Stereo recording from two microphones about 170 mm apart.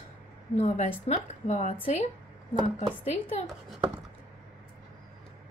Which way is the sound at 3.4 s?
Centre (ahead or behind).